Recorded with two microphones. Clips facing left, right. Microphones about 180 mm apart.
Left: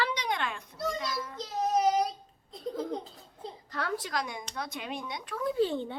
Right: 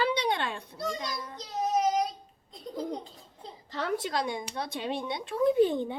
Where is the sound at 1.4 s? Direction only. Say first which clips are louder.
Even; centre (ahead or behind).